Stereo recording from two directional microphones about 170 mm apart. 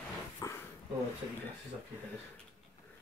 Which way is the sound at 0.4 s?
20° left (ahead or behind).